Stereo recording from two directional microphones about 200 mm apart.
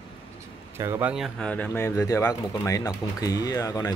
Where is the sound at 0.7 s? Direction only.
10° right (ahead or behind).